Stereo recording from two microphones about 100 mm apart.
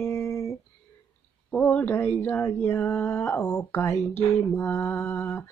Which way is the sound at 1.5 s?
15° left (ahead or behind).